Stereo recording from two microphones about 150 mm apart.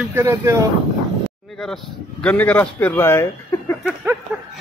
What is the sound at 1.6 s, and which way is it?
A man's voice, 5° left (ahead or behind).